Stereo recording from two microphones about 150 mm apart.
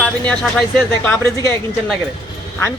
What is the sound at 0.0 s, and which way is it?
Speech, 10° left (ahead or behind).